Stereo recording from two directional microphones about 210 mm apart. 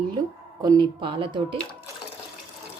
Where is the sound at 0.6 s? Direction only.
20° right (ahead or behind).